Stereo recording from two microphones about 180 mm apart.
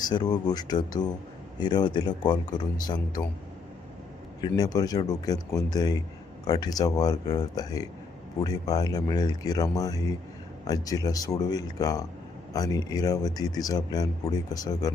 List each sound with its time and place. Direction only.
0.0 s a man's voice: 25° left (ahead or behind)
4.4 s a man's voice: 20° left (ahead or behind)